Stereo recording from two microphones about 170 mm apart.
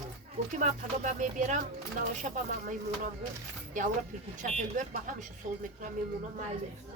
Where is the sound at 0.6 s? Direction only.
45° right (ahead or behind).